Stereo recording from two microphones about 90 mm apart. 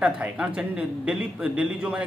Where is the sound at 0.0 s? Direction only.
15° right (ahead or behind).